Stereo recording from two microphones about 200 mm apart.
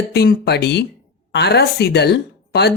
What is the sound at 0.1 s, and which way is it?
Speech, 55° left (ahead or behind).